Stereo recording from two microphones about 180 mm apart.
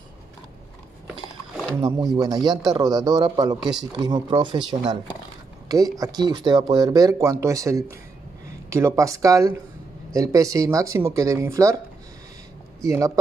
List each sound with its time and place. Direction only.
1.8 s speech: 20° right (ahead or behind)
12.8 s speech: 20° right (ahead or behind)